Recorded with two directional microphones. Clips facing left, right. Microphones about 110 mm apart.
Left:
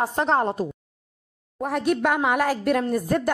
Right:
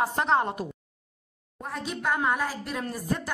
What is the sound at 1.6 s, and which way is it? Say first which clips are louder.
Speech: left 11 dB; 70° left (ahead or behind).